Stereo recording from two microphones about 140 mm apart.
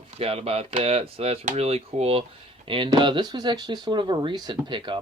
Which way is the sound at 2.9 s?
35° right (ahead or behind).